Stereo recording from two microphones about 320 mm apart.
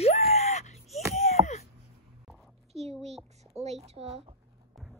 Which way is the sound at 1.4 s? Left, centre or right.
Centre.